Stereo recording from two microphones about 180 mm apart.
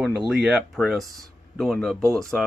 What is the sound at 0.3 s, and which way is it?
Speech, 5° right (ahead or behind).